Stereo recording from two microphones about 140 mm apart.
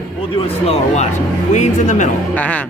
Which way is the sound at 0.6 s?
55° left (ahead or behind).